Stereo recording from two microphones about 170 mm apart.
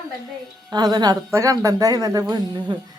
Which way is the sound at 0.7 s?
25° right (ahead or behind).